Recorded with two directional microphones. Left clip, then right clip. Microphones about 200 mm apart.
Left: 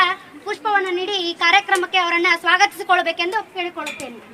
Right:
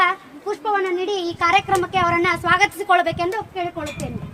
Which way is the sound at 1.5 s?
35° right (ahead or behind).